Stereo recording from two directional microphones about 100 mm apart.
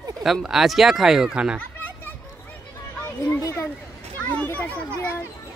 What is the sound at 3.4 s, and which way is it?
Speech, 30° left (ahead or behind).